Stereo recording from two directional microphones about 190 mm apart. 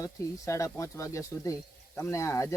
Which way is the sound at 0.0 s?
15° left (ahead or behind).